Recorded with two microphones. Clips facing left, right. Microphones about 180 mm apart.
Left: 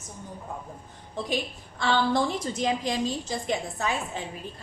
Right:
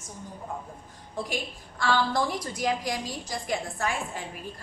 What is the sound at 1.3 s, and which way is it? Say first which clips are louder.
A woman's voice: left 4 dB; 20° left (ahead or behind).